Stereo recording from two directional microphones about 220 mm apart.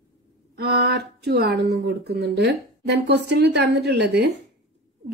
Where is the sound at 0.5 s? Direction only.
45° right (ahead or behind).